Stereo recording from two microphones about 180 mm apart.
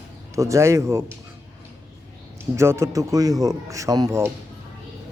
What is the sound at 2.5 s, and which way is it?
A man's voice, 15° right (ahead or behind).